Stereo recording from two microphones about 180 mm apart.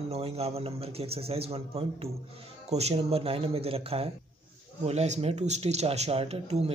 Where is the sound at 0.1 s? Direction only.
35° right (ahead or behind).